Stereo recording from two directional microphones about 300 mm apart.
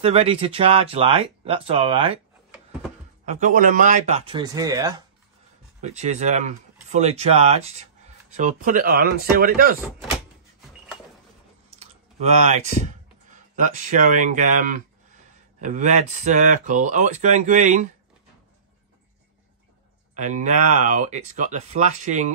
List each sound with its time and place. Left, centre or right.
0.0 s speech: centre
3.3 s speech: right
5.8 s speech: right
9.8 s speech: centre
11.8 s typing: right
13.6 s speech: right
20.2 s speech: right